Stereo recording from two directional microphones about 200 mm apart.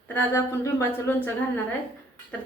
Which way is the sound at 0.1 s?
15° left (ahead or behind).